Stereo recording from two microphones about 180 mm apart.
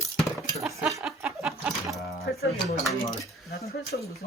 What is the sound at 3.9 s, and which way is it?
Speech, 60° left (ahead or behind).